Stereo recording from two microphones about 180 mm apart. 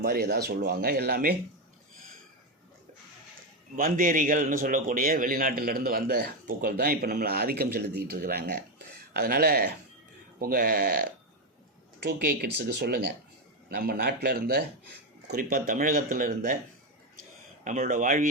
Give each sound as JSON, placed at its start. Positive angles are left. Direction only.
{"t": 0.0, "sound": "a man's voice", "side_deg": -60}
{"t": 3.8, "sound": "a man's voice", "side_deg": -50}
{"t": 12.0, "sound": "a man's voice", "side_deg": -60}
{"t": 17.6, "sound": "speech", "side_deg": -45}